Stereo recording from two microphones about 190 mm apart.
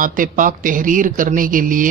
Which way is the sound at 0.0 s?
45° right (ahead or behind).